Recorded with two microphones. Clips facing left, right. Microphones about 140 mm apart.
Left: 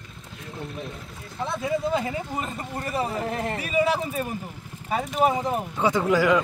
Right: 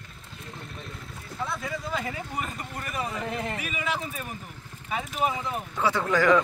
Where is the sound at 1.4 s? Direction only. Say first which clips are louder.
Left 7 dB; 25° left (ahead or behind); by 5.6 s 40° left (ahead or behind).